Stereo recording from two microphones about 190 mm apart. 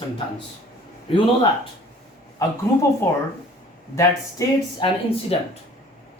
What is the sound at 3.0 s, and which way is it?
Speech, 10° left (ahead or behind).